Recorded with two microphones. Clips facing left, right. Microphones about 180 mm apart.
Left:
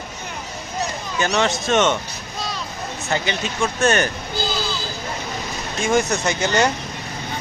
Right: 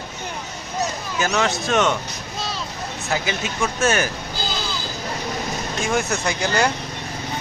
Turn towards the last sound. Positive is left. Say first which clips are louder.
# left 2 dB
turn(degrees=0)  # may be behind; listen again after turning